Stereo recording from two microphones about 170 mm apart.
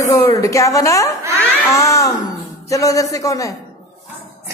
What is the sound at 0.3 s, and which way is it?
Speech, 20° left (ahead or behind).